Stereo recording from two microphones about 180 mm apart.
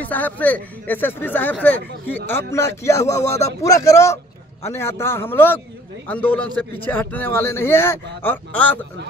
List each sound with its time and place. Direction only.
0.0 s a man's voice: 10° left (ahead or behind)